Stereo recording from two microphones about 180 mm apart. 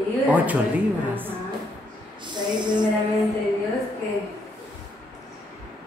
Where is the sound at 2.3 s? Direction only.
25° right (ahead or behind).